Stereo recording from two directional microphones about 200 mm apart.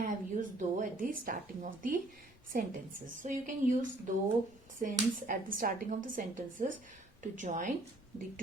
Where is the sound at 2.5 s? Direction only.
45° right (ahead or behind).